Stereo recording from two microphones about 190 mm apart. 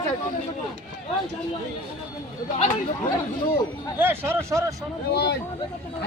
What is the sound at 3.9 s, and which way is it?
Speech, 10° right (ahead or behind).